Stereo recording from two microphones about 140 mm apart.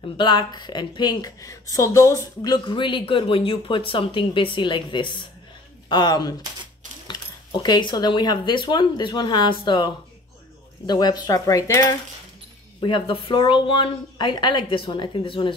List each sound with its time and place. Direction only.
0.2 s speech: 30° left (ahead or behind)
10.9 s speech: 30° left (ahead or behind)
12.8 s speech: 40° left (ahead or behind)